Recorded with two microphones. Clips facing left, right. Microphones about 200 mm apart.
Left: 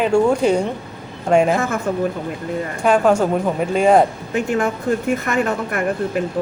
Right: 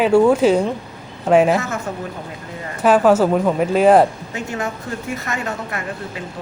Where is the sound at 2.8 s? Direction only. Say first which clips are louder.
Right 2 dB; 5° right (ahead or behind).